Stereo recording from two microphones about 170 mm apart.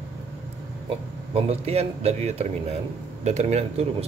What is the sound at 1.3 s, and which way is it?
Speech, 35° right (ahead or behind).